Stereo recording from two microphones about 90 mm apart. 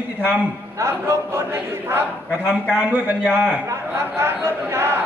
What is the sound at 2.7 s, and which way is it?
Speech, 15° right (ahead or behind).